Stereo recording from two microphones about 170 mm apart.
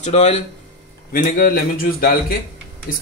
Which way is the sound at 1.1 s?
55° left (ahead or behind).